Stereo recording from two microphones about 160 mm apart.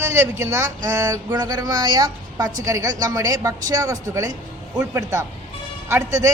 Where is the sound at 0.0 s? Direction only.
15° right (ahead or behind).